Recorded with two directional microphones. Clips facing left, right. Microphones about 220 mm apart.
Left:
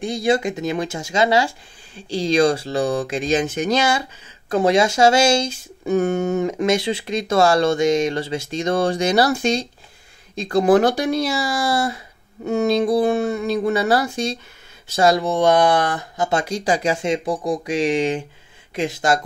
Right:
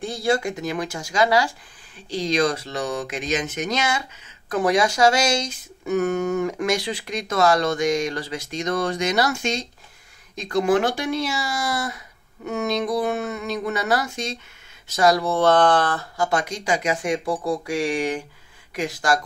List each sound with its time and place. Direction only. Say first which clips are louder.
0.0 s speech: left 3 dB; 15° left (ahead or behind)